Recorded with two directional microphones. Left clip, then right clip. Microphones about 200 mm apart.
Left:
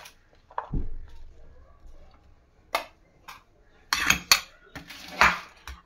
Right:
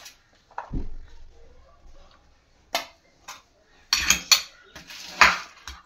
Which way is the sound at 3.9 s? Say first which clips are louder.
Right 2 dB; 5° left (ahead or behind).